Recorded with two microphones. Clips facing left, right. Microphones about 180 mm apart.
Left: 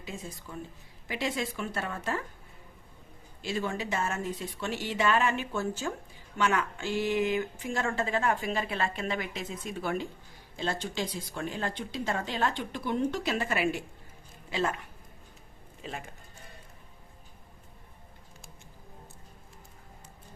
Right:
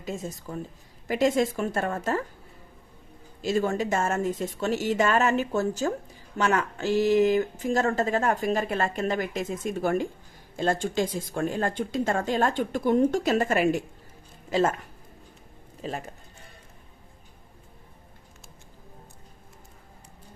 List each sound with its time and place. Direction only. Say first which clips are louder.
0.0 s speech: right 7 dB; 45° right (ahead or behind)
3.4 s speech: right 7 dB; 45° right (ahead or behind)
15.8 s speech: right 7 dB; 40° right (ahead or behind)